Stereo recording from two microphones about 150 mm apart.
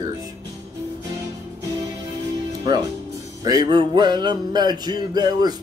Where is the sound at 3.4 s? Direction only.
25° right (ahead or behind).